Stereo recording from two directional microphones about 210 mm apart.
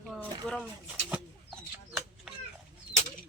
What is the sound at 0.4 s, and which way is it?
Speech, 5° left (ahead or behind).